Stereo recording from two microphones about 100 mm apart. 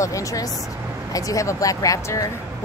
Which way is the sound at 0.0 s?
35° left (ahead or behind).